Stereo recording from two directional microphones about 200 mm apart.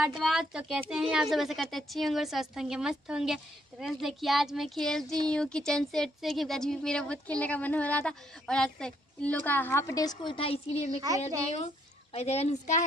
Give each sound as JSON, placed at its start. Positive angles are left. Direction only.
{"t": 0.2, "sound": "speech", "side_deg": 0}